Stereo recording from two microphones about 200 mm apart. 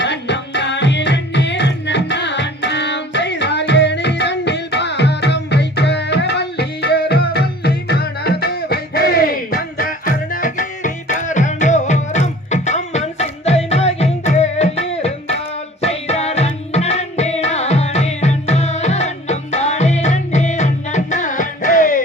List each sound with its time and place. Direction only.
0.0 s music: 60° left (ahead or behind); by 22.0 s 40° left (ahead or behind)